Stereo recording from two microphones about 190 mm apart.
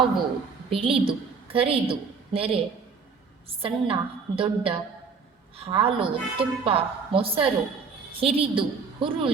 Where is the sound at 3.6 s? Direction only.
30° right (ahead or behind).